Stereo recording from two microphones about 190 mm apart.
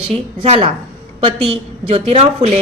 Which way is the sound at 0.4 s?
35° right (ahead or behind).